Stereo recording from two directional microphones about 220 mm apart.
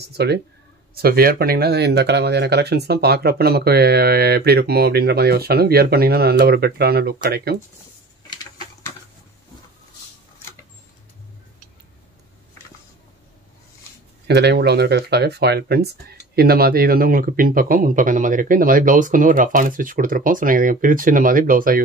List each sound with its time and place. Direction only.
0.2 s speech: 50° right (ahead or behind)
14.2 s speech: 50° right (ahead or behind)